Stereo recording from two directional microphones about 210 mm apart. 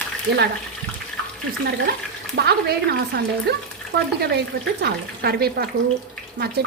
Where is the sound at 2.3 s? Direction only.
50° right (ahead or behind).